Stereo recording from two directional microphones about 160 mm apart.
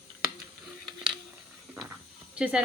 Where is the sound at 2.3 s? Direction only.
5° right (ahead or behind).